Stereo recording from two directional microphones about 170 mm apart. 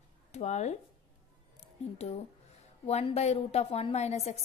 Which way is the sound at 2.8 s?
40° left (ahead or behind).